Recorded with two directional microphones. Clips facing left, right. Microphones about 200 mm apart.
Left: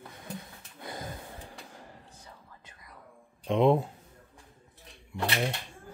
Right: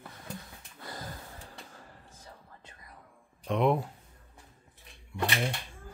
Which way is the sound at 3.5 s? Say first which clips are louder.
Left 3 dB; 25° left (ahead or behind).